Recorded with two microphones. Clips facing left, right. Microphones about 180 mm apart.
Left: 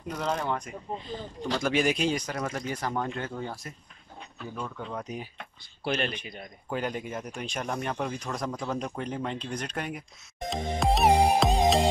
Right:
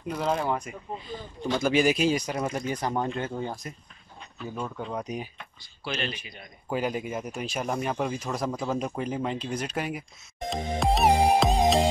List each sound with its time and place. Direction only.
0.1 s speech: 5° right (ahead or behind)
5.4 s speech: 55° left (ahead or behind)
6.7 s speech: 10° right (ahead or behind)